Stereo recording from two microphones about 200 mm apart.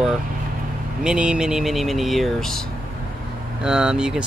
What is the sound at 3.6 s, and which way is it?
Speech, 5° right (ahead or behind).